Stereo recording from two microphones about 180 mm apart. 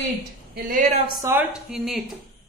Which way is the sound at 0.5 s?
55° right (ahead or behind).